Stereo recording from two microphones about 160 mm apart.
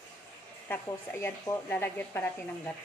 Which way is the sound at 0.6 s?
15° left (ahead or behind).